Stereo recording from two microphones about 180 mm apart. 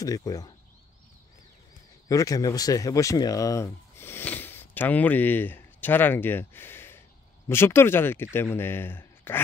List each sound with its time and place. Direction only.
0.0 s speech: 20° left (ahead or behind)
2.0 s speech: 20° left (ahead or behind)